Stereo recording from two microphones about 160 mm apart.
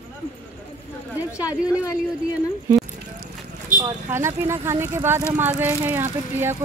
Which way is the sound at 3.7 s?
20° right (ahead or behind).